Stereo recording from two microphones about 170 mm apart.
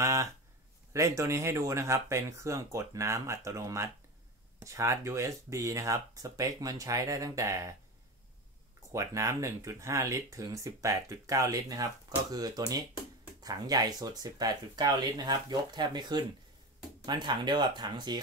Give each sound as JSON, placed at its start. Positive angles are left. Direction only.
{"t": 0.0, "sound": "a sound", "side_deg": -15}
{"t": 0.9, "sound": "speech", "side_deg": -20}
{"t": 8.9, "sound": "speech", "side_deg": -20}